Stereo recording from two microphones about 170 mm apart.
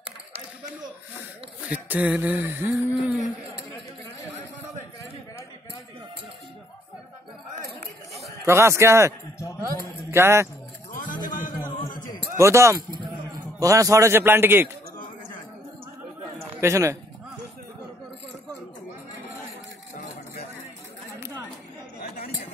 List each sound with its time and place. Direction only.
1.7 s speech: 10° right (ahead or behind)
8.5 s speech: 15° right (ahead or behind)
10.1 s speech: 15° right (ahead or behind)
12.4 s speech: 15° right (ahead or behind)
16.4 s a man's voice: 15° right (ahead or behind)
22.0 s chatter: 60° left (ahead or behind)